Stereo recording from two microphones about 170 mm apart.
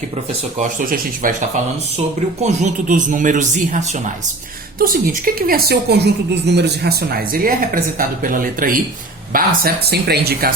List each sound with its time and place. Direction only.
0.6 s speech: 50° right (ahead or behind)
4.8 s a woman's voice: 55° right (ahead or behind)
9.3 s speech: 65° right (ahead or behind)